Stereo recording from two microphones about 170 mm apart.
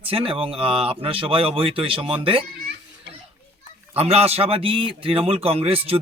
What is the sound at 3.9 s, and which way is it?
Speech, 35° right (ahead or behind).